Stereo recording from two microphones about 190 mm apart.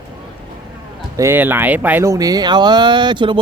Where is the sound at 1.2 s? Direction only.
10° right (ahead or behind).